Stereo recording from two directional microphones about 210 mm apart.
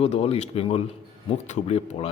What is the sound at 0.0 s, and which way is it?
Speech, 30° left (ahead or behind).